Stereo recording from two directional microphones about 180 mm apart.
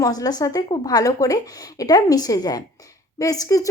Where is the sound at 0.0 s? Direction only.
20° left (ahead or behind).